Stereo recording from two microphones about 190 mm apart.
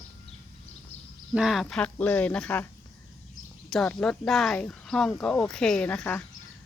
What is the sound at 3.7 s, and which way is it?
Speech, 5° left (ahead or behind).